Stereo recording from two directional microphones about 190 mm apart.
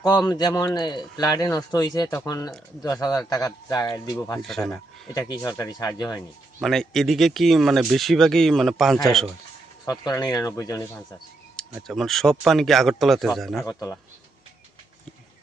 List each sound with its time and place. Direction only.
0.0 s a man's voice: 20° left (ahead or behind)
4.4 s speech: centre (ahead or behind)
5.1 s a man's voice: 15° left (ahead or behind)
6.6 s speech: centre (ahead or behind)
9.8 s speech: 20° left (ahead or behind)
11.5 s speech: centre (ahead or behind)
13.7 s speech: 15° left (ahead or behind)